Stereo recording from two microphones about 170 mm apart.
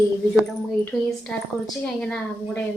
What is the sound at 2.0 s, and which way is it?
Speech, 5° left (ahead or behind).